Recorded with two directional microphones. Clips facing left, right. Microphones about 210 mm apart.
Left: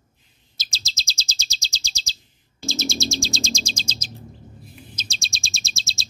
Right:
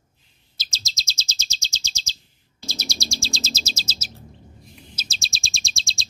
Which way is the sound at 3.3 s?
5° right (ahead or behind).